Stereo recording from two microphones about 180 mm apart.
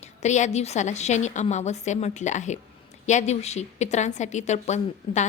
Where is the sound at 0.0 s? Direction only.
40° left (ahead or behind).